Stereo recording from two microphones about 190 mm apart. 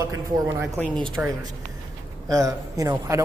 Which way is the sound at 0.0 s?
15° right (ahead or behind).